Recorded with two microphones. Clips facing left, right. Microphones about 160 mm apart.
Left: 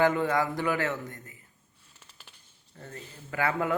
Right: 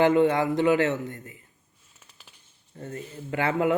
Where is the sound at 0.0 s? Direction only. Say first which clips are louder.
Right 5 dB; 25° right (ahead or behind).